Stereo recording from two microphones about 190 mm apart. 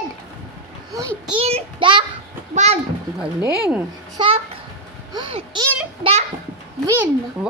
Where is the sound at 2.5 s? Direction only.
35° right (ahead or behind).